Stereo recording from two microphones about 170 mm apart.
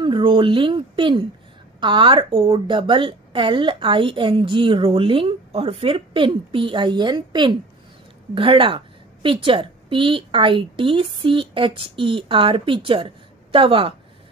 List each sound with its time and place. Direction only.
0.0 s a woman's voice: 30° right (ahead or behind)